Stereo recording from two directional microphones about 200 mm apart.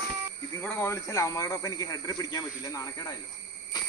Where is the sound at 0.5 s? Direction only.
10° left (ahead or behind).